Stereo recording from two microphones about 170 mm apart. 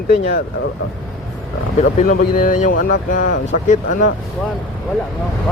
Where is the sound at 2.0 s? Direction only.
55° left (ahead or behind).